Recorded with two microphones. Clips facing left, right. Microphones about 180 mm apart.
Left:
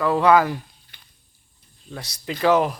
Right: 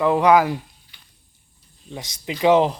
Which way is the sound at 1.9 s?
20° right (ahead or behind).